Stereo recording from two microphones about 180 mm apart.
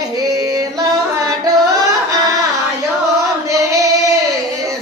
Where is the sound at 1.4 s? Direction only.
20° right (ahead or behind).